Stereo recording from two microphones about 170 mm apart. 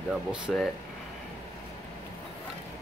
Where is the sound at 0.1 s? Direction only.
5° right (ahead or behind).